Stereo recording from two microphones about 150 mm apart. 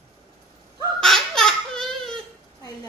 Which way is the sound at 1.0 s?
Centre (ahead or behind).